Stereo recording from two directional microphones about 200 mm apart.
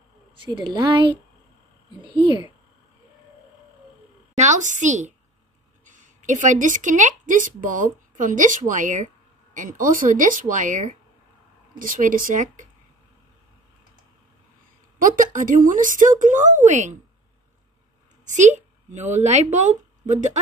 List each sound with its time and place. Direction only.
0.4 s a woman's voice: 25° right (ahead or behind)
4.4 s a woman's voice: 35° right (ahead or behind)
15.0 s speech: 40° right (ahead or behind)
18.2 s speech: 35° right (ahead or behind)